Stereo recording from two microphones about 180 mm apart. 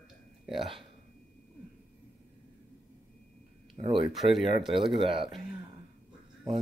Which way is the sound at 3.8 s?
30° right (ahead or behind).